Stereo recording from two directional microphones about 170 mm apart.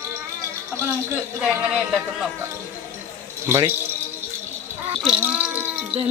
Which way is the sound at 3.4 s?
15° right (ahead or behind).